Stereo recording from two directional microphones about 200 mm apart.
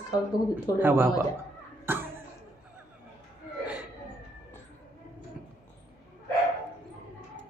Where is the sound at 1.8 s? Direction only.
10° right (ahead or behind).